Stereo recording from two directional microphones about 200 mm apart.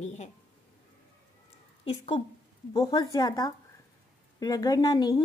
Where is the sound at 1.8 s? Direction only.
30° left (ahead or behind).